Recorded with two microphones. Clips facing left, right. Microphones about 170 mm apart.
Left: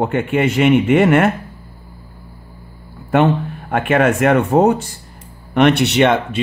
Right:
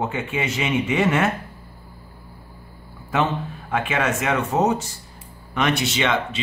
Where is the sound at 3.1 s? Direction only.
55° left (ahead or behind).